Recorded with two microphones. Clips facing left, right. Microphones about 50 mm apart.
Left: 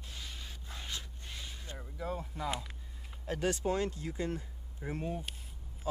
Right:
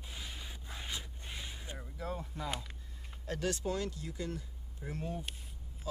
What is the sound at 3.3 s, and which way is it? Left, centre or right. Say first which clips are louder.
Speech: left 3 dB; left.